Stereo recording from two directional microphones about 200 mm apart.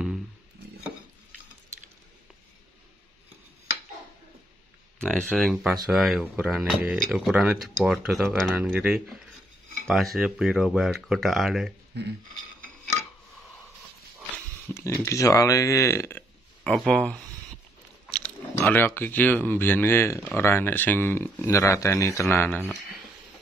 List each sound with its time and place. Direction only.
4.9 s speech: 5° left (ahead or behind)
14.3 s speech: 10° left (ahead or behind)